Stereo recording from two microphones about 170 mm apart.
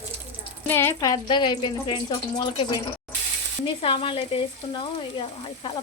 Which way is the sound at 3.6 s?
30° left (ahead or behind).